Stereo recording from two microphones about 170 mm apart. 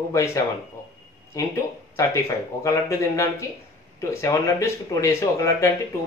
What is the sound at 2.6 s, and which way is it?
Speech, 20° left (ahead or behind).